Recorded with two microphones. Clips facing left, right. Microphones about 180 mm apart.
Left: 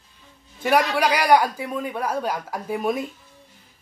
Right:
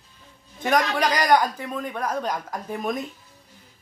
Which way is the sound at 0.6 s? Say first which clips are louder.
Left 2 dB; 10° left (ahead or behind).